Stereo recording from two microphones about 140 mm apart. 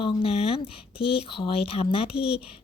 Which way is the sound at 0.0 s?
40° left (ahead or behind).